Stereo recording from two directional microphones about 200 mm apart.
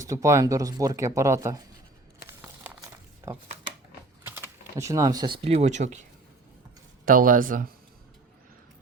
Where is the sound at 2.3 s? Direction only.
10° right (ahead or behind).